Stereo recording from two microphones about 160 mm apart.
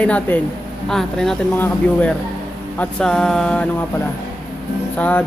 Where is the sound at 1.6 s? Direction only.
10° left (ahead or behind).